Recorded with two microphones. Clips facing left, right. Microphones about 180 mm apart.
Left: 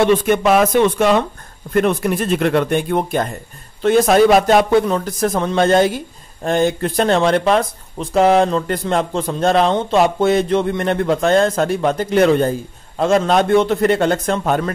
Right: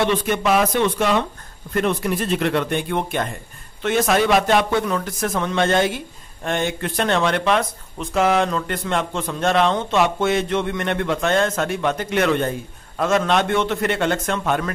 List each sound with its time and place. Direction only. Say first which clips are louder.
0.0 s a man's voice: left 6 dB; 50° left (ahead or behind)